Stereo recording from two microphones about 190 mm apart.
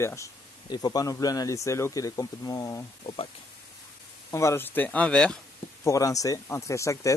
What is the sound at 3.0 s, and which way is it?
Speech, 30° left (ahead or behind).